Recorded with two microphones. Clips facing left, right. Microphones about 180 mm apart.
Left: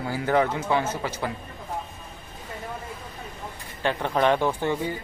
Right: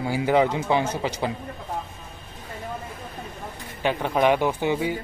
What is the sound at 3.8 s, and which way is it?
Speech, 10° right (ahead or behind).